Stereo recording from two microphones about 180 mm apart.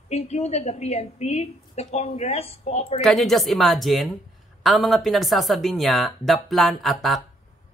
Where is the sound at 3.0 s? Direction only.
Centre (ahead or behind).